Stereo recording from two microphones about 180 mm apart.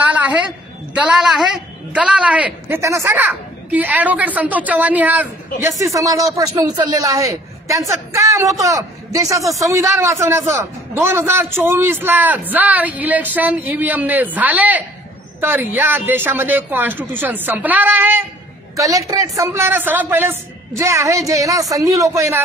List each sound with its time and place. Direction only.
0.1 s a woman's voice: 10° right (ahead or behind)